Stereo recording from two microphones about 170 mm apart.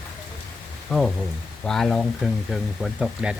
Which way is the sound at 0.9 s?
5° right (ahead or behind).